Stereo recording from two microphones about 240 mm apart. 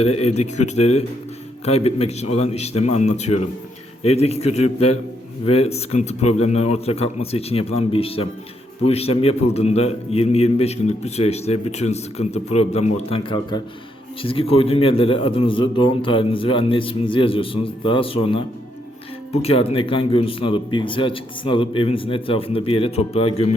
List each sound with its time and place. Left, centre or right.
0.0 s a man's voice: left